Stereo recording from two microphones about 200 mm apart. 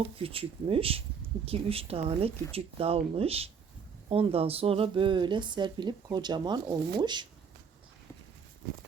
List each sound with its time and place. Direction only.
0.2 s speech: 30° right (ahead or behind)